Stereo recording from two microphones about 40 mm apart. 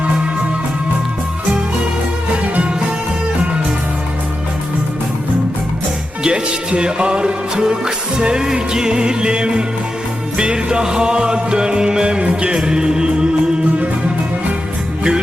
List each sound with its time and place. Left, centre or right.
6.2 s music: right